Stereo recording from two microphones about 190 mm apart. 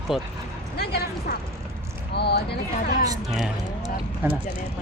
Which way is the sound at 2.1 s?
60° left (ahead or behind).